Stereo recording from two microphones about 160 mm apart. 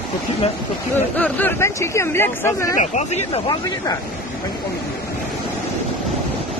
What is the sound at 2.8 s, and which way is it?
Speech, 45° left (ahead or behind).